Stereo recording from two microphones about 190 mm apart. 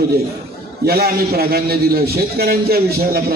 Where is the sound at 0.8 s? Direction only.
55° right (ahead or behind).